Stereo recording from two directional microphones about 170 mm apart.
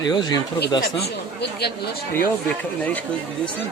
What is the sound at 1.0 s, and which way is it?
Speech, 75° left (ahead or behind).